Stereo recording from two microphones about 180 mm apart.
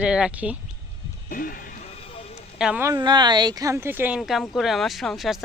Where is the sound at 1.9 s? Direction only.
30° left (ahead or behind).